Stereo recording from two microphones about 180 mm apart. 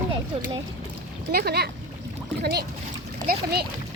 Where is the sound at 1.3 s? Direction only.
60° right (ahead or behind).